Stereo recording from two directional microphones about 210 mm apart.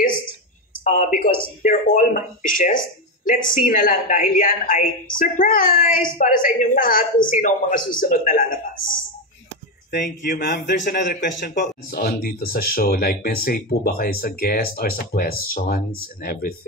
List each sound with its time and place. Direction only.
0.8 s a woman's voice: 40° left (ahead or behind)